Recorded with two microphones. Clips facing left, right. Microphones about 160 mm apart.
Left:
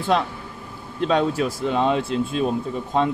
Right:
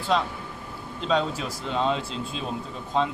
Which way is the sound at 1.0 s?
55° left (ahead or behind).